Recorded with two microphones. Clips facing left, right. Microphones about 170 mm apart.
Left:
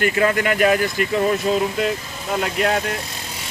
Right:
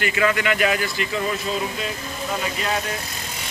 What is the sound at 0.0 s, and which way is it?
Speech, 45° left (ahead or behind).